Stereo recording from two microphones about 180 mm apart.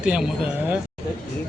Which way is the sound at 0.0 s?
5° right (ahead or behind).